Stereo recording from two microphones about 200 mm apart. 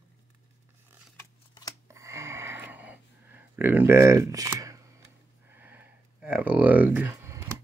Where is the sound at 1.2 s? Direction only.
15° left (ahead or behind).